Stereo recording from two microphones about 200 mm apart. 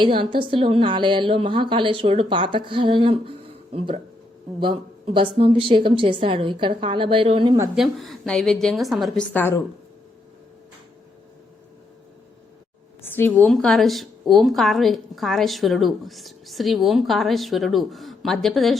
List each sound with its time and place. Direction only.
0.0 s a woman's voice: 25° right (ahead or behind)
7.8 s a woman's voice: centre (ahead or behind)
13.0 s a woman's voice: 10° left (ahead or behind)